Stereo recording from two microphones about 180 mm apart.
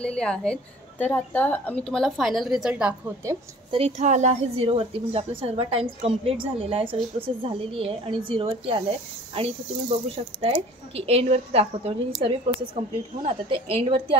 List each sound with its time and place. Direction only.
0.0 s speech: 5° left (ahead or behind)
3.7 s a woman's voice: 35° right (ahead or behind)